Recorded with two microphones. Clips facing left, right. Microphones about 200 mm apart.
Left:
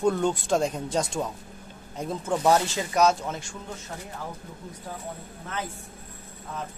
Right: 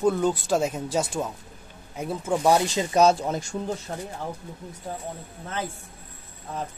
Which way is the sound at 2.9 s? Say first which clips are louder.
Right 3 dB; 35° right (ahead or behind).